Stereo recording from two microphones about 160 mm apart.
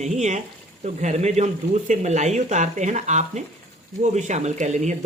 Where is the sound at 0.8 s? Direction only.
45° right (ahead or behind).